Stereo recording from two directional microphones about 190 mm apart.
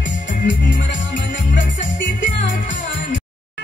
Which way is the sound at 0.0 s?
40° left (ahead or behind).